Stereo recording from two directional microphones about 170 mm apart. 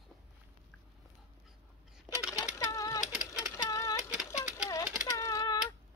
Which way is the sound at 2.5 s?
20° left (ahead or behind).